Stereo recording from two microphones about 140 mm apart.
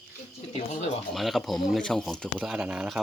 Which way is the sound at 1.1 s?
Centre (ahead or behind).